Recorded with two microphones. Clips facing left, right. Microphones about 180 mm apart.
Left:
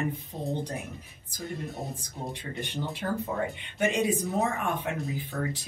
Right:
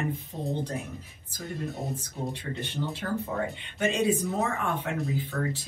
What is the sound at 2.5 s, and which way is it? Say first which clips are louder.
Speech: right 1 dB; 15° left (ahead or behind).